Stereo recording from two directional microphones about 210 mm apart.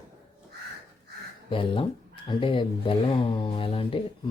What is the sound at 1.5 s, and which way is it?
Speech, 25° left (ahead or behind).